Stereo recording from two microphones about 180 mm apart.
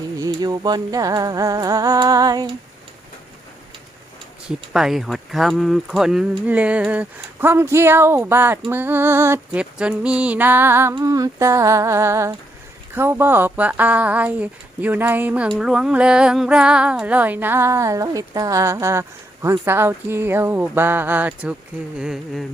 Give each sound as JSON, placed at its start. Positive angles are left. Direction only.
{"t": 0.2, "sound": "music", "side_deg": -20}
{"t": 4.4, "sound": "speech", "side_deg": -5}
{"t": 21.9, "sound": "humming", "side_deg": -5}